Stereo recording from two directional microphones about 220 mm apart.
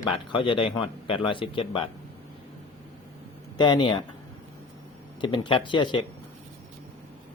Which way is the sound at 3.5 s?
20° left (ahead or behind).